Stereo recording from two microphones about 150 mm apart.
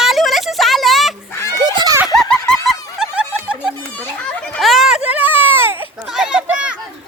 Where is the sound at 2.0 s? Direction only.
Centre (ahead or behind).